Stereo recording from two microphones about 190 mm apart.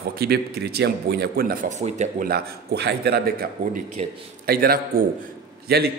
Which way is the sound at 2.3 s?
60° right (ahead or behind).